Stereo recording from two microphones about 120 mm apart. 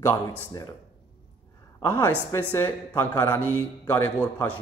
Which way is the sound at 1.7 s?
20° left (ahead or behind).